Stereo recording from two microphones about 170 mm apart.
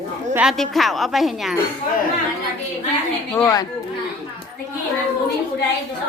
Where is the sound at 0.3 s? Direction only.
Centre (ahead or behind).